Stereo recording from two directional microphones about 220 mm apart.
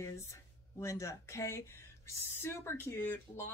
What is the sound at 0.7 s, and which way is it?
Speech, 15° left (ahead or behind).